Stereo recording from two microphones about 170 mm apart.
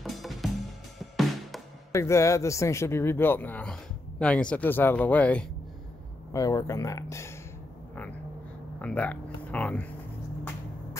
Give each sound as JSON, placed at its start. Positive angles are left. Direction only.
{"t": 0.0, "sound": "music", "side_deg": 0}
{"t": 1.9, "sound": "speech", "side_deg": 15}
{"t": 6.3, "sound": "speech", "side_deg": 20}
{"t": 8.8, "sound": "speech", "side_deg": 10}